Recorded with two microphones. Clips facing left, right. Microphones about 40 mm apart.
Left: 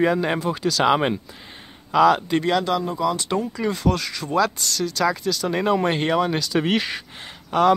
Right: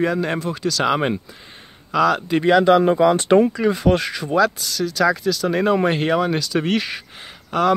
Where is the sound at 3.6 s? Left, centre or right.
Centre.